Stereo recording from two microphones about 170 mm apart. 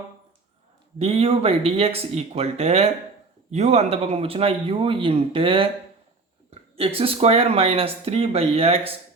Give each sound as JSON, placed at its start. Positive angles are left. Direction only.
{"t": 0.9, "sound": "speech", "side_deg": -35}